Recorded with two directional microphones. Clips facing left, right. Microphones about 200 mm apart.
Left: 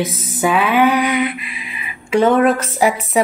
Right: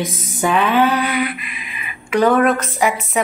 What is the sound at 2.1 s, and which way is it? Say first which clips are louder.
Speech: left 1 dB; 25° left (ahead or behind).